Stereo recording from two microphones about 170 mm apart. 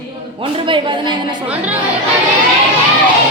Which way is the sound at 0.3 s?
30° right (ahead or behind).